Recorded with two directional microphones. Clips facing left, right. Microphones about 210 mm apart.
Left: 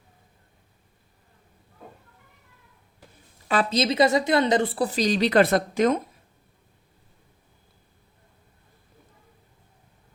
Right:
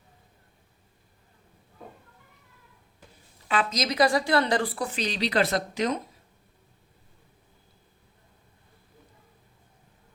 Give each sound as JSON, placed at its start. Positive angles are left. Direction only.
{"t": 3.5, "sound": "a woman's voice", "side_deg": 35}